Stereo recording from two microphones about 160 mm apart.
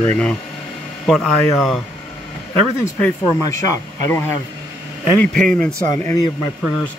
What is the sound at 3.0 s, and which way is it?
Speech, 20° left (ahead or behind).